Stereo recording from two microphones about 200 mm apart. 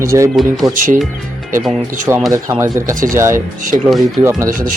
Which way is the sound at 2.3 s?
15° right (ahead or behind).